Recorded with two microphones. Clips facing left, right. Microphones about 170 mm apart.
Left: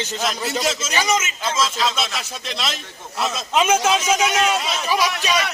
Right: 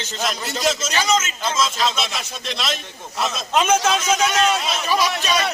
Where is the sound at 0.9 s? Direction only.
15° left (ahead or behind).